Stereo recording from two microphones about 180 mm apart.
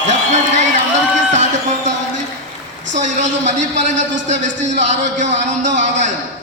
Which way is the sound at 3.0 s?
40° right (ahead or behind).